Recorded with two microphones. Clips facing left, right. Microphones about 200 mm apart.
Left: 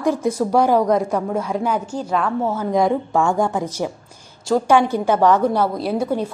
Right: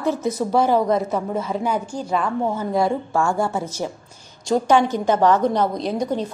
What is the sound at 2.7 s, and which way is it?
A woman's voice, 20° left (ahead or behind).